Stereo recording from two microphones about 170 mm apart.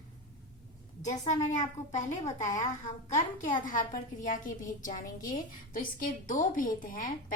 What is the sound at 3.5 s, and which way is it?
A woman's voice, 50° left (ahead or behind).